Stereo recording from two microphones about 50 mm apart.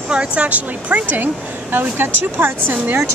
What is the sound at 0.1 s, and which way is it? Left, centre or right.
Speech, right.